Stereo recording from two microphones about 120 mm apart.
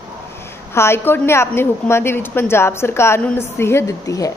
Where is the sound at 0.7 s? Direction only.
20° left (ahead or behind).